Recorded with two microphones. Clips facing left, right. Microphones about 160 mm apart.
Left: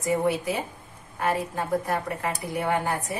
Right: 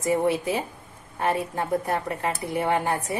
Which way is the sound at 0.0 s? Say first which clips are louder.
Right 2 dB; 25° right (ahead or behind).